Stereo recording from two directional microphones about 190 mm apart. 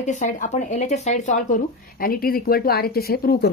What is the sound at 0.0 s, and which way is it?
Speech, 40° left (ahead or behind).